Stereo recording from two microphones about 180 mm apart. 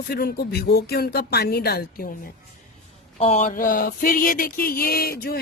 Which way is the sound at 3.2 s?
35° left (ahead or behind).